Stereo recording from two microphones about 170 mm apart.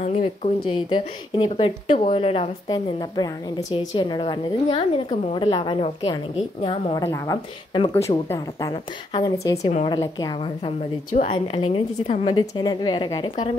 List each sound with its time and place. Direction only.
0.0 s a woman's voice: 40° left (ahead or behind)
7.0 s a woman's voice: 20° left (ahead or behind)